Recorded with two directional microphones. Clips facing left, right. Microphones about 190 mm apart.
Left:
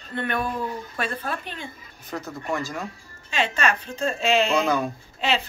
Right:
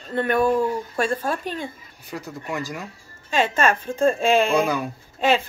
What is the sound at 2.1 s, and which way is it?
Speech, 10° right (ahead or behind).